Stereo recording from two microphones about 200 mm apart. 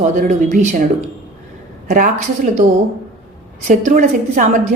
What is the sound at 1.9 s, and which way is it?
Speech, 40° right (ahead or behind).